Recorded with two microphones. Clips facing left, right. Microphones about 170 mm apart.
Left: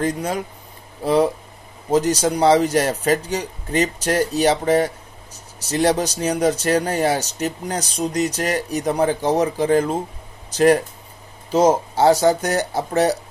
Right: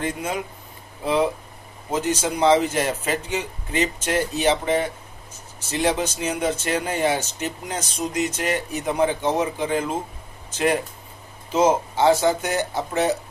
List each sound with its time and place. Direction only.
0.0 s speech: 40° left (ahead or behind)
1.9 s speech: 40° left (ahead or behind)